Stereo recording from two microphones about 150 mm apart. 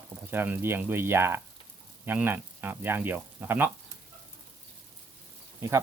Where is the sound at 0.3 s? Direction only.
15° right (ahead or behind).